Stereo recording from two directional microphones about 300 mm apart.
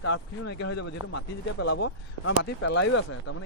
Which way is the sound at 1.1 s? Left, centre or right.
Left.